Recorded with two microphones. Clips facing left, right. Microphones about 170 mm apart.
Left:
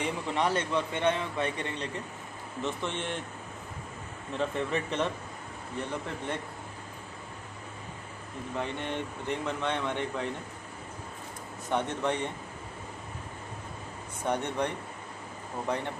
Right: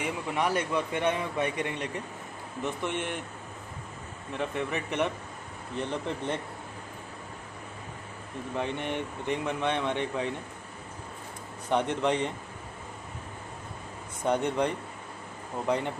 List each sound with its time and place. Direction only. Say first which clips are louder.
0.0 s a man's voice: even; 10° right (ahead or behind)
4.4 s a man's voice: left 1 dB; 15° right (ahead or behind)
8.5 s a man's voice: right 2 dB; 15° right (ahead or behind)
11.7 s a man's voice: right 3 dB; 15° right (ahead or behind)
14.2 s a man's voice: right 4 dB; 15° right (ahead or behind)